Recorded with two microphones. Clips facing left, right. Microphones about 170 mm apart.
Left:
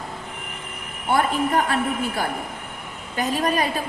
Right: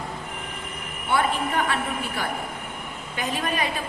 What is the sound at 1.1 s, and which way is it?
A woman's voice, 40° left (ahead or behind).